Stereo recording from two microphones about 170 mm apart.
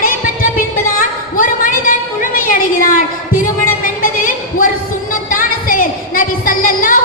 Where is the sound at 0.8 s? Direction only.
55° left (ahead or behind).